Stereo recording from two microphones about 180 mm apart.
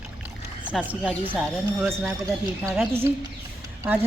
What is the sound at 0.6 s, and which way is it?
Speech, 5° right (ahead or behind).